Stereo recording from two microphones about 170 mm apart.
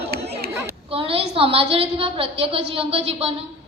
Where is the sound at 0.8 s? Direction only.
35° right (ahead or behind).